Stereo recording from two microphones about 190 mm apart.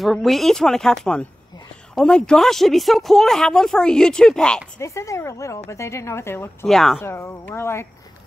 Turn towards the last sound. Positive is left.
turn(degrees=15)  # may be behind; listen again after turning